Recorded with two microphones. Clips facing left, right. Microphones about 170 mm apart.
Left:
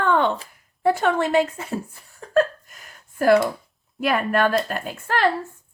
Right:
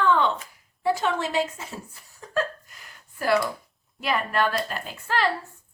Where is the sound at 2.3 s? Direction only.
50° left (ahead or behind).